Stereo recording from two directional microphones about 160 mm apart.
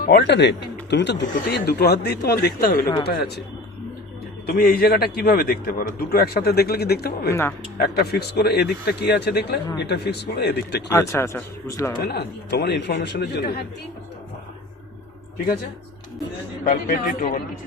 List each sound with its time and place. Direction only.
0.0 s speech: 90° left
4.4 s a man's voice: 70° left (ahead or behind)
7.3 s speech: 15° left (ahead or behind)
7.8 s speech: 85° left
10.9 s speech: 15° left (ahead or behind)
12.0 s speech: 90° left
16.6 s a man's voice: 60° left (ahead or behind)